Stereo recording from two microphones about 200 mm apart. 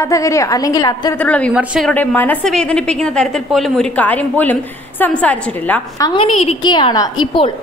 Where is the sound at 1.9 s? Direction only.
10° left (ahead or behind).